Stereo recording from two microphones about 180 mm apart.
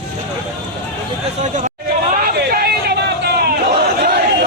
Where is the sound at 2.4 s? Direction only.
60° right (ahead or behind).